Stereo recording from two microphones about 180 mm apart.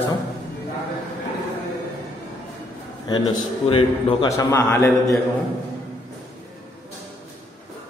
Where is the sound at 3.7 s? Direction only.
30° left (ahead or behind).